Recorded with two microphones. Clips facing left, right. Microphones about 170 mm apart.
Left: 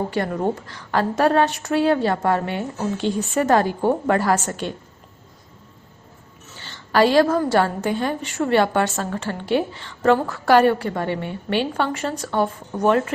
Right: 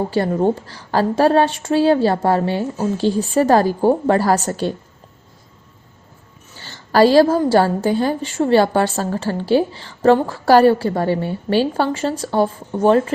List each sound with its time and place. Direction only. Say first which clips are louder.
0.1 s a woman's voice: right 5 dB; 30° right (ahead or behind)
6.7 s a woman's voice: right 4 dB; 35° right (ahead or behind)